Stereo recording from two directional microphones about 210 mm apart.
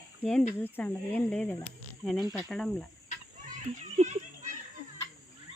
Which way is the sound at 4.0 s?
35° right (ahead or behind).